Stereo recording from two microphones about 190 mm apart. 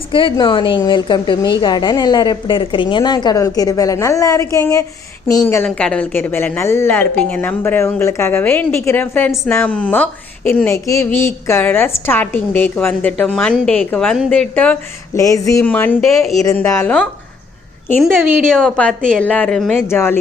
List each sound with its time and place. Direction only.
0.1 s a woman's voice: 25° left (ahead or behind); by 16.3 s centre (ahead or behind)
16.4 s a woman's voice: 15° left (ahead or behind)